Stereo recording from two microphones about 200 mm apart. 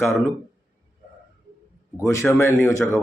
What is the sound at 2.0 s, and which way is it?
Speech, 5° left (ahead or behind).